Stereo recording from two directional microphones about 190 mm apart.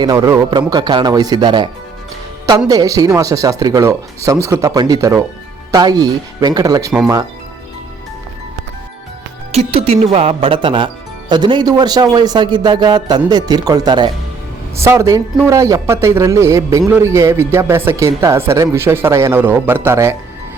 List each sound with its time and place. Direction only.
0.0 s a man's voice: 20° right (ahead or behind)
9.5 s a man's voice: 30° right (ahead or behind); by 20.1 s 15° right (ahead or behind)